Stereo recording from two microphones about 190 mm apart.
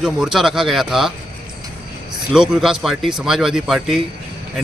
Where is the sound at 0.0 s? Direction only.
5° right (ahead or behind).